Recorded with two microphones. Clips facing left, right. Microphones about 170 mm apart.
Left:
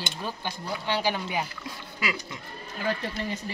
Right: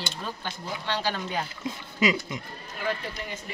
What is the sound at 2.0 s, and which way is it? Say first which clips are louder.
Speech: right 8 dB; 20° right (ahead or behind).